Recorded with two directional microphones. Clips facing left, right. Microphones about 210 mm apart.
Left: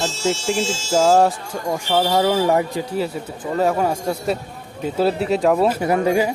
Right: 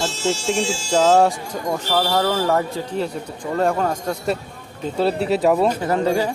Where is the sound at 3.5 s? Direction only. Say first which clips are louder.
Left 1 dB; 5° left (ahead or behind).